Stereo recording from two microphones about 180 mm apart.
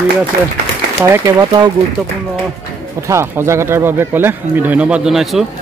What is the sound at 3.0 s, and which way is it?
Speech, 15° right (ahead or behind).